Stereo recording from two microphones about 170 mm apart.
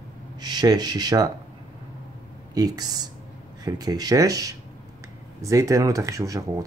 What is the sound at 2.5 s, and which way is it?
Speech, 20° right (ahead or behind).